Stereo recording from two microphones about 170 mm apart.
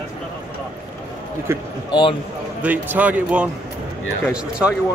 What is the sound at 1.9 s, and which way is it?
Speech, 30° left (ahead or behind).